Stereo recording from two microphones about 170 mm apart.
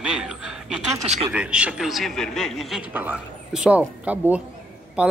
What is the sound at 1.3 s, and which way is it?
A man's voice, 5° right (ahead or behind).